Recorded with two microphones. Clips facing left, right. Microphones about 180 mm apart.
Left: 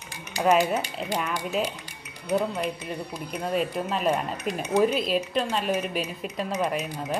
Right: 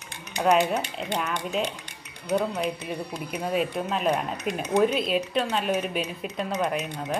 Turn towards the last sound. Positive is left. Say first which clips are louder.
# even
turn(degrees=5)  # may be behind; listen again after turning